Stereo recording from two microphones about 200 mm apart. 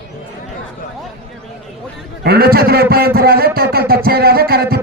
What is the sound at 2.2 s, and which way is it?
Speech, 50° right (ahead or behind).